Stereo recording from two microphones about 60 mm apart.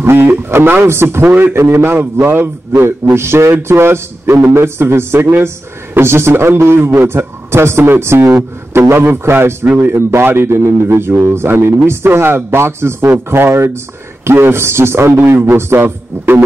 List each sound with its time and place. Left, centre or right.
0.0 s a man's voice: right